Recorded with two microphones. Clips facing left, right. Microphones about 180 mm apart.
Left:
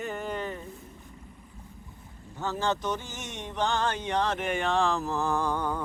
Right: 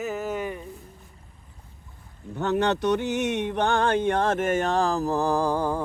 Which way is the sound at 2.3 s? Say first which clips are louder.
Right 6 dB; 65° right (ahead or behind).